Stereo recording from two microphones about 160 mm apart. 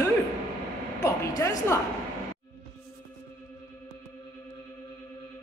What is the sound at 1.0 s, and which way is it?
Speech, 20° left (ahead or behind).